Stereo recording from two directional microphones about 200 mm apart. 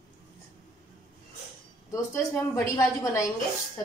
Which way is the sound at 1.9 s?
15° left (ahead or behind).